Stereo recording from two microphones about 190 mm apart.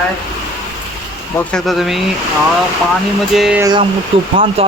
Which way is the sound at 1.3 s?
Centre (ahead or behind).